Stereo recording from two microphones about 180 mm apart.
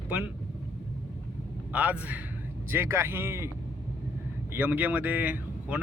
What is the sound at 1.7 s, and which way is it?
Speech, 5° right (ahead or behind).